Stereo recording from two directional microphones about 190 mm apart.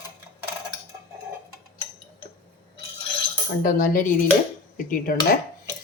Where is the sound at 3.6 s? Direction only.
45° left (ahead or behind).